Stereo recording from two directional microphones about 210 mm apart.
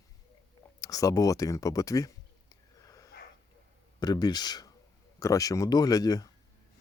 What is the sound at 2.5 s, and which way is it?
Wheeze, 15° left (ahead or behind).